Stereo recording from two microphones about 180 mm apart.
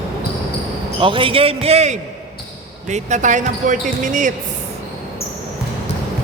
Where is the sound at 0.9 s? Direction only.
30° right (ahead or behind); by 4.4 s 45° right (ahead or behind).